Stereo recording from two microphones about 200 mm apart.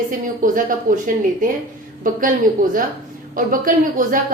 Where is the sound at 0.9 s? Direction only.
40° right (ahead or behind).